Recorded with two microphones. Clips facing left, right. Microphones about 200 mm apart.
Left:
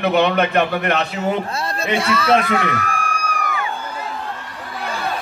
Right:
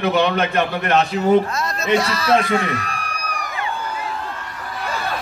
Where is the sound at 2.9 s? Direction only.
55° left (ahead or behind).